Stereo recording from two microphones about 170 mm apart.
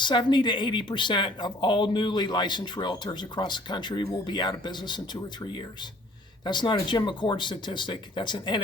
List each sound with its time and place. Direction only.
0.0 s speech: 25° left (ahead or behind)
6.4 s speech: 25° left (ahead or behind)